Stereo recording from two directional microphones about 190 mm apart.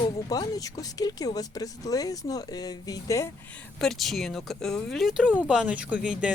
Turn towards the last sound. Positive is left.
turn(degrees=-5)  # may be behind; listen again after turning